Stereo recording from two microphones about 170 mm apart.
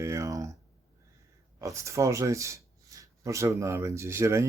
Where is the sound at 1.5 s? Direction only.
15° right (ahead or behind).